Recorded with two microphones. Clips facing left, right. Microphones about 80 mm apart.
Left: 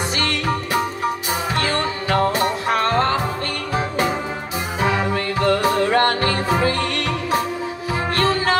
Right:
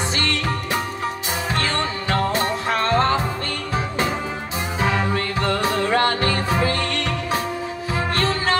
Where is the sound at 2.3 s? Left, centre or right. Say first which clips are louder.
Left 2 dB; centre.